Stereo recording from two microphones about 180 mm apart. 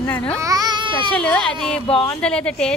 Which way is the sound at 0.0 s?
10° left (ahead or behind).